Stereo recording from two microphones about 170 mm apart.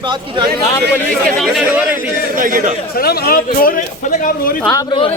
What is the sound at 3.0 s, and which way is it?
A man's voice, 65° left (ahead or behind).